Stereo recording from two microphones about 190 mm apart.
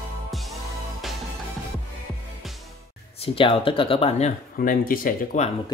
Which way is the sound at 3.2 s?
30° left (ahead or behind).